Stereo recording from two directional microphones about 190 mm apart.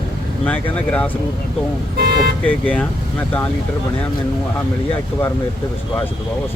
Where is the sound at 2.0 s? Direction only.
55° right (ahead or behind).